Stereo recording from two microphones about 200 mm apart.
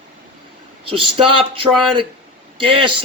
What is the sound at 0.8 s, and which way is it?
Speech, 25° right (ahead or behind).